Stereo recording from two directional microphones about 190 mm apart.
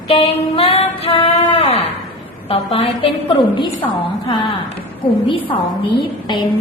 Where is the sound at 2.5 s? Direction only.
30° left (ahead or behind).